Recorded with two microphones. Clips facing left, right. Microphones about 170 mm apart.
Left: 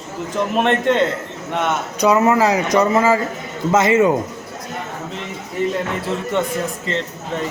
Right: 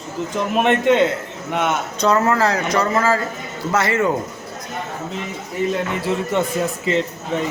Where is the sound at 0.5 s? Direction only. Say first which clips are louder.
Right 2 dB; 5° right (ahead or behind).